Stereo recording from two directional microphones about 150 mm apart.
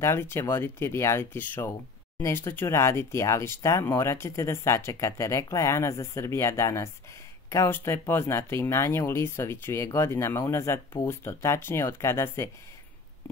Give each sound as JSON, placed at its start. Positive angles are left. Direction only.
{"t": 0.0, "sound": "speech", "side_deg": 15}